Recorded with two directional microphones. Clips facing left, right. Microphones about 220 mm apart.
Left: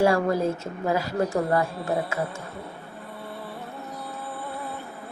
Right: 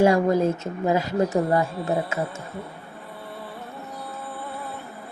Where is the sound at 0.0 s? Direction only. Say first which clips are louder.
Right 3 dB; 20° right (ahead or behind).